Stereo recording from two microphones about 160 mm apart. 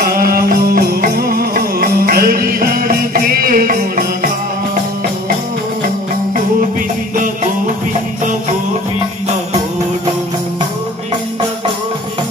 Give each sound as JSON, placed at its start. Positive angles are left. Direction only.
{"t": 0.0, "sound": "music", "side_deg": -65}